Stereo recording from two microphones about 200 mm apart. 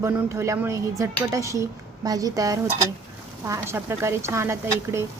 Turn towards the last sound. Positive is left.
turn(degrees=-15)  # may be behind; listen again after turning